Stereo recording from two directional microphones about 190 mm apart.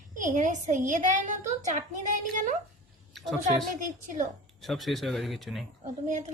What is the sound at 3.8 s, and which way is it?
Speech, 40° right (ahead or behind).